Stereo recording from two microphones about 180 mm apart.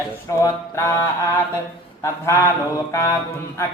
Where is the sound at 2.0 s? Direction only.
15° left (ahead or behind).